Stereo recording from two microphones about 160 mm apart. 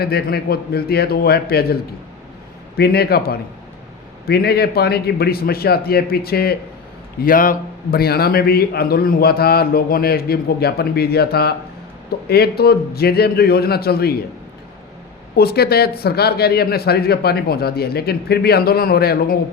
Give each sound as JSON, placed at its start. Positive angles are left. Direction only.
{"t": 0.0, "sound": "a man's voice", "side_deg": 75}
{"t": 7.2, "sound": "a man's voice", "side_deg": 60}
{"t": 15.4, "sound": "a man's voice", "side_deg": 75}